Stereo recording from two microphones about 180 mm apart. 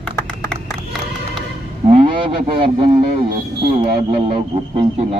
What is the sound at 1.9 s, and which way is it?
Speech, 35° right (ahead or behind).